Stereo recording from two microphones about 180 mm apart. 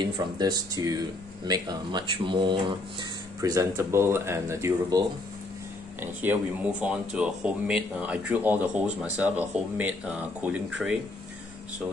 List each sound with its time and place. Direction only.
0.0 s speech: 20° right (ahead or behind); by 11.0 s 5° right (ahead or behind)